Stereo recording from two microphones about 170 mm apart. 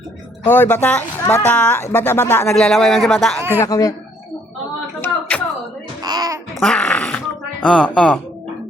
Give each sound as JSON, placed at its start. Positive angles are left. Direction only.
{"t": 0.4, "sound": "speech", "side_deg": 10}
{"t": 2.6, "sound": "a man's voice", "side_deg": 0}
{"t": 3.6, "sound": "speech", "side_deg": 20}
{"t": 4.9, "sound": "a sound", "side_deg": 15}
{"t": 6.0, "sound": "a sound", "side_deg": -20}
{"t": 6.6, "sound": "fart", "side_deg": 5}
{"t": 7.6, "sound": "a man's voice", "side_deg": 5}